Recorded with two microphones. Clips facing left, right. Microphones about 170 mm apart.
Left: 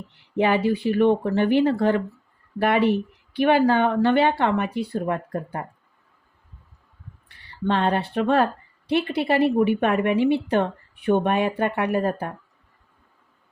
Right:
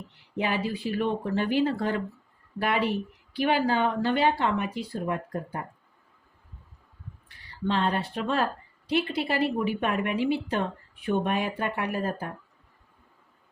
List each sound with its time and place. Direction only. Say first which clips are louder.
0.3 s a woman's voice: left 8 dB; 65° left (ahead or behind)
7.7 s a woman's voice: left 5 dB; 60° left (ahead or behind)